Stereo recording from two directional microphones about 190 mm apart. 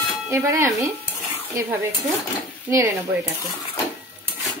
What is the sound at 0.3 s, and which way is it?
Speech, 15° right (ahead or behind).